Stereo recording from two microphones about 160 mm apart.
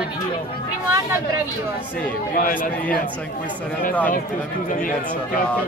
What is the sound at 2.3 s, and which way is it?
Speech, 60° left (ahead or behind).